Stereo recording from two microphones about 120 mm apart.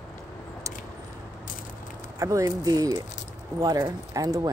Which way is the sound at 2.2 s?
30° right (ahead or behind).